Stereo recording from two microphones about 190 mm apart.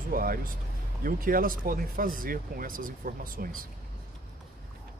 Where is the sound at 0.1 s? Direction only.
50° right (ahead or behind).